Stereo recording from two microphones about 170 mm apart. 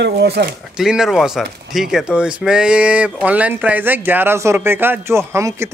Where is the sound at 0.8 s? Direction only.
Centre (ahead or behind).